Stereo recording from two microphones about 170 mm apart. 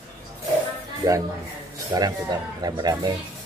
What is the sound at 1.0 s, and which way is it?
Speech, 20° right (ahead or behind).